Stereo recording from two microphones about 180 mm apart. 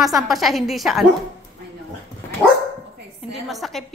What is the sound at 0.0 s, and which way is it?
A woman's voice, centre (ahead or behind).